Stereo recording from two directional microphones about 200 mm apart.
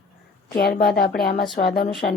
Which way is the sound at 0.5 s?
50° left (ahead or behind).